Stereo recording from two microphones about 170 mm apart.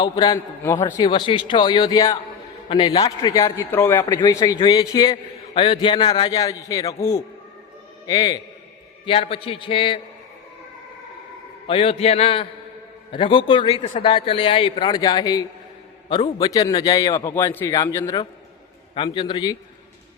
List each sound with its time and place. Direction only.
0.0 s a man's voice: 25° left (ahead or behind)
9.0 s a man's voice: 35° left (ahead or behind)
11.7 s a man's voice: 30° left (ahead or behind)